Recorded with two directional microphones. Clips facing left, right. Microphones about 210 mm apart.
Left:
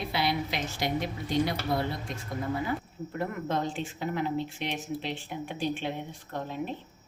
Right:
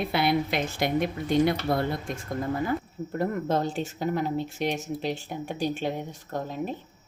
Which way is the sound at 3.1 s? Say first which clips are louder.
Right 5 dB; 40° right (ahead or behind).